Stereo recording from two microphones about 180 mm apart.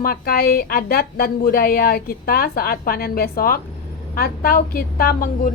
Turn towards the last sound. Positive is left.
turn(degrees=50)  # may be behind; listen again after turning